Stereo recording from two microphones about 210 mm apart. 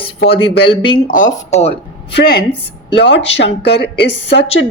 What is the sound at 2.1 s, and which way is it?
Speech, 50° left (ahead or behind).